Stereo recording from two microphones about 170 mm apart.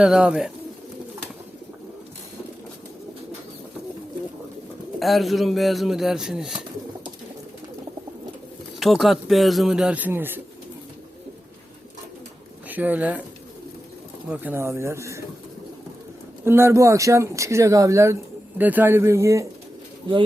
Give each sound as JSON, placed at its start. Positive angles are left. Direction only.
{"t": 0.0, "sound": "speech", "side_deg": -5}
{"t": 4.9, "sound": "speech", "side_deg": 0}
{"t": 8.8, "sound": "speech", "side_deg": 0}
{"t": 12.6, "sound": "speech", "side_deg": -10}
{"t": 14.3, "sound": "speech", "side_deg": -10}
{"t": 16.4, "sound": "speech", "side_deg": -15}